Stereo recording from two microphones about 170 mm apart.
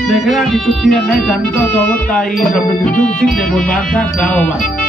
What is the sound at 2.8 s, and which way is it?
Speech, 5° left (ahead or behind).